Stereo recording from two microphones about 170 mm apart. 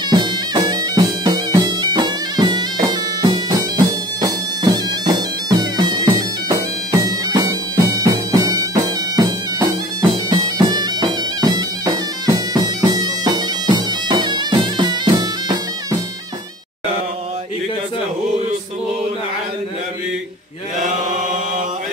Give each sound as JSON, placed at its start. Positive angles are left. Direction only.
{"t": 0.1, "sound": "bagpipes", "side_deg": -25}